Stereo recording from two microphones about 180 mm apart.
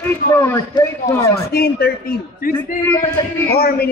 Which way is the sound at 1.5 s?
60° left (ahead or behind).